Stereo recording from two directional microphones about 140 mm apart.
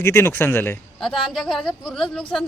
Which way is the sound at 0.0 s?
15° left (ahead or behind).